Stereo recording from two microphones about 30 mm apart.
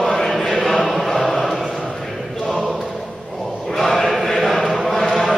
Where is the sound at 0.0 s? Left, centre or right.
Centre.